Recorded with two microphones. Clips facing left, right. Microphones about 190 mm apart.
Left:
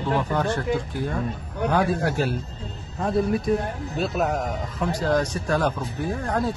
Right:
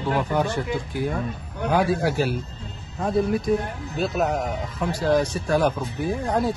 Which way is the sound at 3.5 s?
5° right (ahead or behind).